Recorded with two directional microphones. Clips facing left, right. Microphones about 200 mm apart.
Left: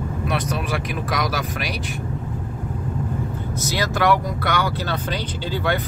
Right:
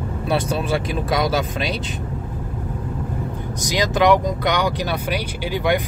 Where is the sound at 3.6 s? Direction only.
15° right (ahead or behind).